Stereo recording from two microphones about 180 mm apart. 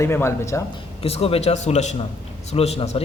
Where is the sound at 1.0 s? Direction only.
35° left (ahead or behind).